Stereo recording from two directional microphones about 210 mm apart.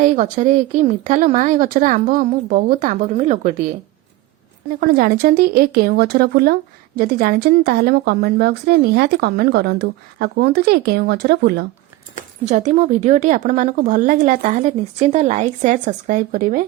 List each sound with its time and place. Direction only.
0.0 s speech: 35° right (ahead or behind)
4.8 s speech: 45° right (ahead or behind)
12.1 s speech: 35° right (ahead or behind)